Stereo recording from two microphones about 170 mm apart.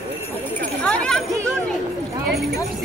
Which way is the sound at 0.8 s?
5° left (ahead or behind).